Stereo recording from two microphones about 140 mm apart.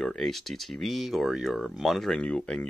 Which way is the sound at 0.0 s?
5° left (ahead or behind).